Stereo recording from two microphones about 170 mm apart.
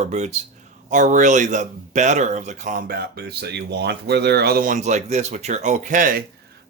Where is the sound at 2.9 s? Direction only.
70° right (ahead or behind); by 6.2 s 50° right (ahead or behind).